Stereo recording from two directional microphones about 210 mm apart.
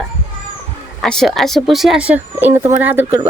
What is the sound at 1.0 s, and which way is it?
A woman's voice, centre (ahead or behind).